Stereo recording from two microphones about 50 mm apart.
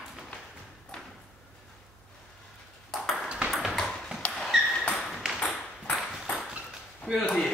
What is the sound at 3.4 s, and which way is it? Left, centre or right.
Ping, right.